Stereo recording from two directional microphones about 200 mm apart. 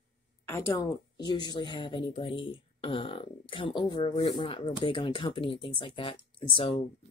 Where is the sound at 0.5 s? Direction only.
15° left (ahead or behind).